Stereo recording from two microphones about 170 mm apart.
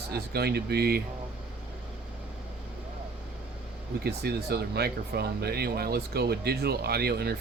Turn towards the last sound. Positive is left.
turn(degrees=-70)  # may be behind; listen again after turning